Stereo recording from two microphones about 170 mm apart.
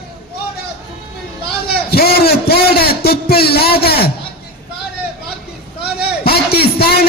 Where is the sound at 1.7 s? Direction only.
65° left (ahead or behind).